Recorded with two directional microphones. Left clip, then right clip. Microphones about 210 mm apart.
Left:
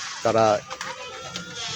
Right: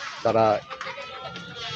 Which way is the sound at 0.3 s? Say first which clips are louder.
Left 1 dB; 15° left (ahead or behind).